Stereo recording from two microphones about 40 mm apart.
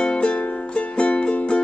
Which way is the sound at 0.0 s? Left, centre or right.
Left.